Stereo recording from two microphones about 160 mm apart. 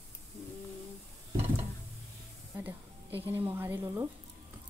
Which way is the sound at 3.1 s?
10° right (ahead or behind).